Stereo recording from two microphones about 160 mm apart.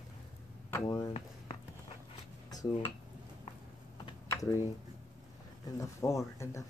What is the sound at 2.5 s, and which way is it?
Dishes, 25° left (ahead or behind).